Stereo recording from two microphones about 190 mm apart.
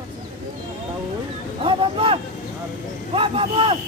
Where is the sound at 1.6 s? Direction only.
30° right (ahead or behind).